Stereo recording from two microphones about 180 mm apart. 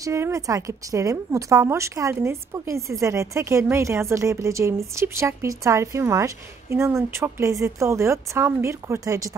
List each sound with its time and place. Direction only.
0.0 s a woman's voice: 15° right (ahead or behind)